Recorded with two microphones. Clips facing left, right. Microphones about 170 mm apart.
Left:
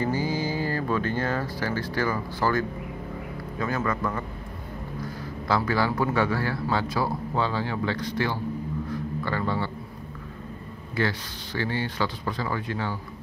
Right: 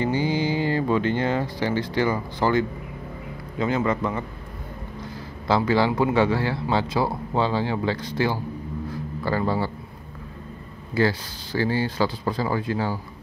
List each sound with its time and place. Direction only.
0.0 s speech: 25° right (ahead or behind)
5.5 s speech: 25° right (ahead or behind)
9.2 s speech: 35° right (ahead or behind)
11.0 s speech: 35° right (ahead or behind)